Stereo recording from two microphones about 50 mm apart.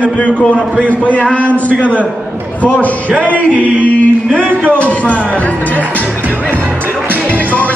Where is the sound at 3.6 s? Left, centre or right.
Right.